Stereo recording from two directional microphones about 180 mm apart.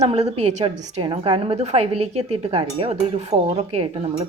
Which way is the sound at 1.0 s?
25° right (ahead or behind).